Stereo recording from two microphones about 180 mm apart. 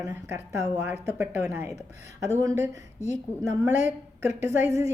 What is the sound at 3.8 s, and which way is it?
Speech, 15° right (ahead or behind).